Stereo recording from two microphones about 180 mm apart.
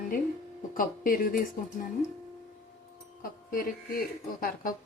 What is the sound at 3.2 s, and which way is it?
Speech, 50° left (ahead or behind).